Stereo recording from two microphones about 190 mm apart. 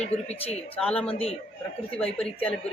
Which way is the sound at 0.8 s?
5° left (ahead or behind).